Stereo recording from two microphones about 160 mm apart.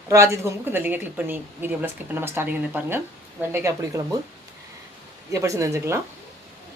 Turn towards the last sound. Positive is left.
turn(degrees=-15)  # may be behind; listen again after turning